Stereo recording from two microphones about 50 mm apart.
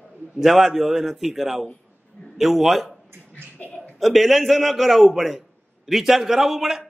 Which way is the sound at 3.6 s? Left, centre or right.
Left.